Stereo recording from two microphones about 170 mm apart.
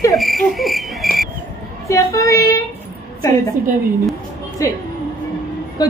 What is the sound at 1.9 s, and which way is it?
Speech, 20° left (ahead or behind).